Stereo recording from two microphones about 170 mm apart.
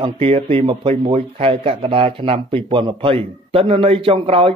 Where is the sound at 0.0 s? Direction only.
35° right (ahead or behind).